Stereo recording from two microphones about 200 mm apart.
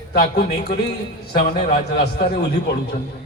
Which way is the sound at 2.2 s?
55° left (ahead or behind).